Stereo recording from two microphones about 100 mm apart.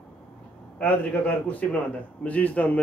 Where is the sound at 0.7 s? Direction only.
15° left (ahead or behind).